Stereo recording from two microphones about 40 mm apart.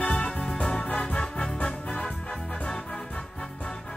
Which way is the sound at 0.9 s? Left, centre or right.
Left.